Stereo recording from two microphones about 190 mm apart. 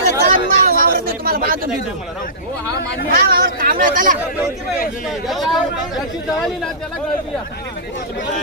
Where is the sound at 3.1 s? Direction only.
50° right (ahead or behind).